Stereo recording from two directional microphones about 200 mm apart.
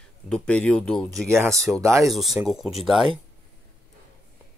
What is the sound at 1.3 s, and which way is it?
Speech, 15° right (ahead or behind).